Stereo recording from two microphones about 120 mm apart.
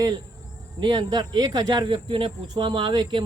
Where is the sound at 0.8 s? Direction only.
40° right (ahead or behind).